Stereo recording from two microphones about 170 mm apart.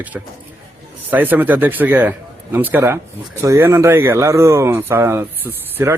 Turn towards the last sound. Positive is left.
turn(degrees=-10)  # may be behind; listen again after turning